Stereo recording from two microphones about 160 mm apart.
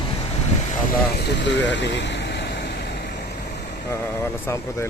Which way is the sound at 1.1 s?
90° left.